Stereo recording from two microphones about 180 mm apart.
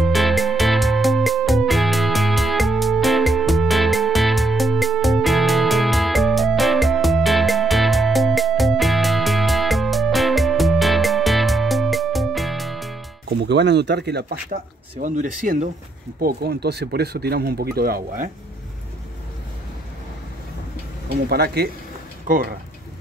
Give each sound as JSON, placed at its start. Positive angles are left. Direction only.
{"t": 0.0, "sound": "music", "side_deg": 0}
{"t": 13.3, "sound": "speech", "side_deg": -70}
{"t": 16.2, "sound": "speech", "side_deg": -60}
{"t": 21.3, "sound": "speech", "side_deg": -60}